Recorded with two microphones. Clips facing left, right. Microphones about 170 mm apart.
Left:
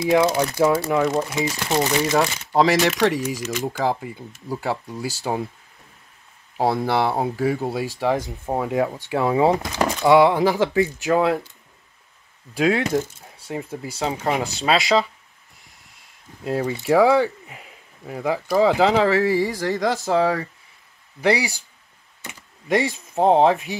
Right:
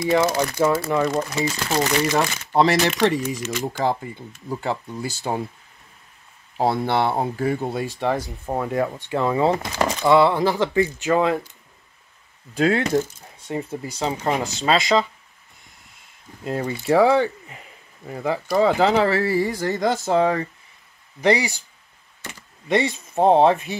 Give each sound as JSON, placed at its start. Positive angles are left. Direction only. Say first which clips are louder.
{"t": 0.6, "sound": "speech", "louder": "left 1 dB", "side_deg": 10}
{"t": 2.1, "sound": "speech", "louder": "left 2 dB", "side_deg": 5}
{"t": 6.5, "sound": "speech", "louder": "even", "side_deg": 5}
{"t": 10.7, "sound": "speech", "louder": "even", "side_deg": 0}
{"t": 12.5, "sound": "speech", "louder": "right 1 dB", "side_deg": 10}
{"t": 13.2, "sound": "speech", "louder": "right 2 dB", "side_deg": 0}
{"t": 16.4, "sound": "speech", "louder": "left 1 dB", "side_deg": 5}
{"t": 22.9, "sound": "speech", "louder": "right 1 dB", "side_deg": 5}